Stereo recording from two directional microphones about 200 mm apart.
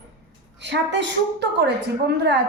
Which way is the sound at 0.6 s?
60° right (ahead or behind).